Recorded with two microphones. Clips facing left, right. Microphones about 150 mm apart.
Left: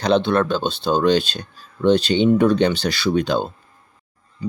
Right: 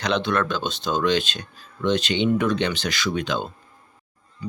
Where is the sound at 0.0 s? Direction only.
30° left (ahead or behind).